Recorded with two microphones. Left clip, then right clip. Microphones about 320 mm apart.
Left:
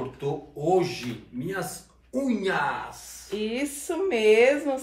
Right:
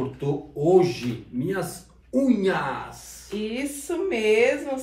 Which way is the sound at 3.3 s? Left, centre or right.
Left.